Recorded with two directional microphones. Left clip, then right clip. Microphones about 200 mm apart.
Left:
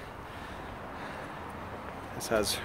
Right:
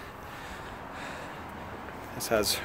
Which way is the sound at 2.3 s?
15° right (ahead or behind).